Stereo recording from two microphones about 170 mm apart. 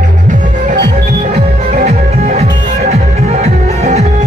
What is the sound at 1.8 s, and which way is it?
Music, 40° right (ahead or behind).